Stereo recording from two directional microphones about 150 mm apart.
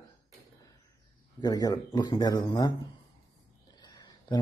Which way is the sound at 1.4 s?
25° left (ahead or behind).